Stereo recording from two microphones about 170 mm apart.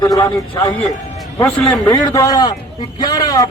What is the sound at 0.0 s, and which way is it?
Speech, 20° left (ahead or behind).